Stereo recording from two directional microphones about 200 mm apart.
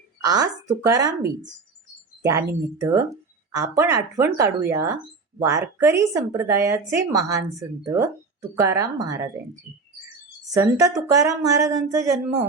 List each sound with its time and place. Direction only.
0.3 s speech: 20° right (ahead or behind)
10.5 s speech: 15° right (ahead or behind)